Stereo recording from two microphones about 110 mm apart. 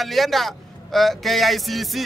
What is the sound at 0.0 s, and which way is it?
Speech, centre (ahead or behind).